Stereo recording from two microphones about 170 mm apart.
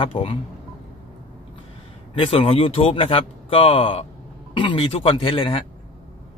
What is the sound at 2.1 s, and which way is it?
Speech, 35° left (ahead or behind).